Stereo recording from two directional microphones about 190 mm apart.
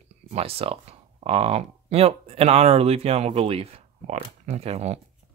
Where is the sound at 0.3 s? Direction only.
30° right (ahead or behind).